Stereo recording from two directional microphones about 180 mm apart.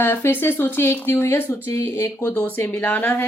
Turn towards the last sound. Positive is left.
turn(degrees=10)  # may be behind; listen again after turning